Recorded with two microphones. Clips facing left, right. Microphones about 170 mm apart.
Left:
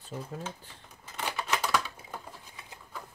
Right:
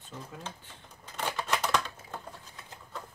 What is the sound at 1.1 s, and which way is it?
Typewriter, 5° left (ahead or behind).